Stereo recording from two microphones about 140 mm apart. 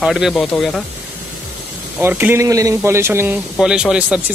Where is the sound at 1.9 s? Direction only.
15° right (ahead or behind).